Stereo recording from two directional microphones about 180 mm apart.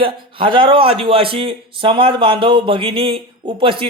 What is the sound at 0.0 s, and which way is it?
A man's voice, 30° right (ahead or behind).